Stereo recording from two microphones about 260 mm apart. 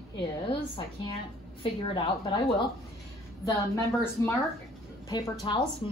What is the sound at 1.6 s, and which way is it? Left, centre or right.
Speech, centre.